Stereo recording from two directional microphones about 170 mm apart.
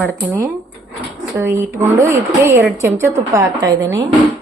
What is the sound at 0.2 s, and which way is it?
A woman's voice, 15° right (ahead or behind).